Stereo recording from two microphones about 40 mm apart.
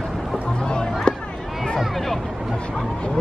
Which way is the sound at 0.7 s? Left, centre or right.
Centre.